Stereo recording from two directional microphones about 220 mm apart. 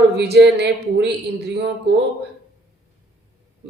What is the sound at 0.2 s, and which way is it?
A man's voice, 50° right (ahead or behind).